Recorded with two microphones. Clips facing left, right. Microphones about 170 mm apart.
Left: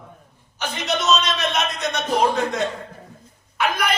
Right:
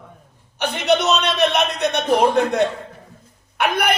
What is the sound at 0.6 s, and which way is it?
A man's voice, 65° right (ahead or behind).